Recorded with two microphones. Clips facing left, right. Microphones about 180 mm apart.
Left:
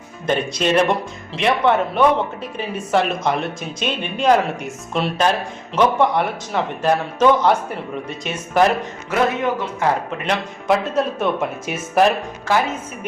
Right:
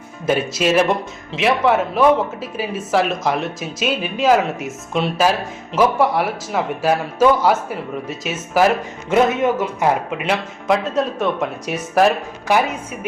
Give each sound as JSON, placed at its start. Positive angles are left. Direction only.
{"t": 0.3, "sound": "speech", "side_deg": -5}
{"t": 9.0, "sound": "a man's voice", "side_deg": -20}
{"t": 10.7, "sound": "speech", "side_deg": 0}
{"t": 12.5, "sound": "a woman's voice", "side_deg": -15}